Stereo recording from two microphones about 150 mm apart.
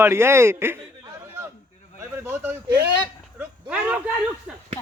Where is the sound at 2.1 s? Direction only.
15° right (ahead or behind).